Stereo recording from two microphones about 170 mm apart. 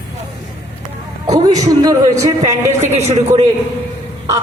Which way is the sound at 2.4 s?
40° right (ahead or behind).